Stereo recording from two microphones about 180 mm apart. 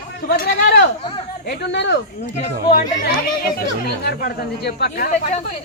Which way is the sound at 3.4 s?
60° left (ahead or behind).